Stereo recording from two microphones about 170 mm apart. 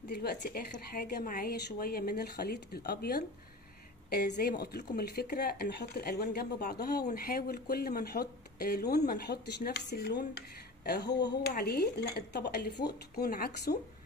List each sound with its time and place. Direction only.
0.1 s a woman's voice: 70° left (ahead or behind)